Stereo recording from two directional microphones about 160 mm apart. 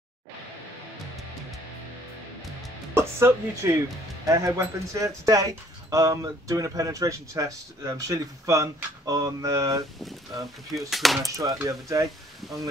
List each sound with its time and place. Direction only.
2.9 s speech: 15° right (ahead or behind)
10.9 s speech: centre (ahead or behind)
11.2 s speech: 20° right (ahead or behind)